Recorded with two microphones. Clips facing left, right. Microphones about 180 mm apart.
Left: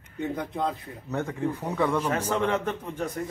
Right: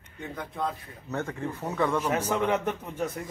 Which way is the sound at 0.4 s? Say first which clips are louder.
Left 3 dB; 20° left (ahead or behind).